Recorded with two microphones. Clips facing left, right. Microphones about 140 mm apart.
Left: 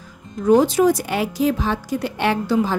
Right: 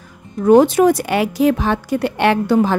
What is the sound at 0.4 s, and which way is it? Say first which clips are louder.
Speech: right 4 dB; 60° right (ahead or behind).